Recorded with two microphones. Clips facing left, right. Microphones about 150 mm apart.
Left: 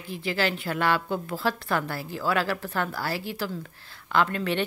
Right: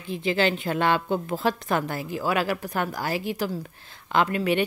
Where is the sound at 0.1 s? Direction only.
20° right (ahead or behind).